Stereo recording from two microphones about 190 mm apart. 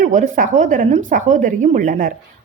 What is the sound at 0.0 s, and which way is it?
A woman's voice, 45° right (ahead or behind).